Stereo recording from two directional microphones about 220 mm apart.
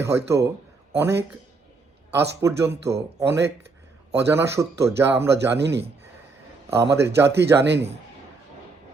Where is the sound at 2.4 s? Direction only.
10° right (ahead or behind).